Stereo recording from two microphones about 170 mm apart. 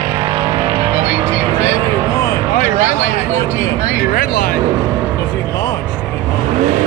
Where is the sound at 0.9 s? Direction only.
40° right (ahead or behind).